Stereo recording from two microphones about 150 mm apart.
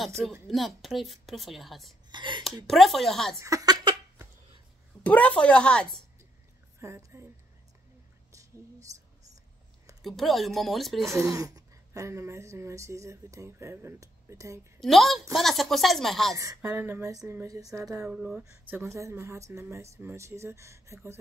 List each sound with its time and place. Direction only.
0.0 s a woman's voice: centre (ahead or behind)
2.0 s speech: 30° right (ahead or behind)
2.6 s a woman's voice: centre (ahead or behind)
3.3 s a sound: 20° right (ahead or behind)
5.0 s speech: 10° left (ahead or behind)
6.8 s a woman's voice: 20° right (ahead or behind)
8.3 s a sound: 20° right (ahead or behind)
10.0 s a woman's voice: centre (ahead or behind)
11.1 s a woman's voice: 20° right (ahead or behind)
14.8 s a woman's voice: centre (ahead or behind)
16.3 s a woman's voice: 20° right (ahead or behind)
18.1 s a woman's voice: 5° right (ahead or behind)
18.8 s a woman's voice: 20° right (ahead or behind)